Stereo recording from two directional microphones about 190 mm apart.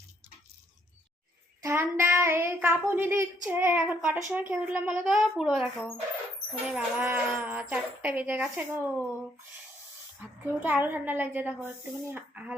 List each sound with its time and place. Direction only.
1.6 s a child's voice: 15° right (ahead or behind)
6.7 s speech: 10° right (ahead or behind)
10.6 s speech: 10° right (ahead or behind)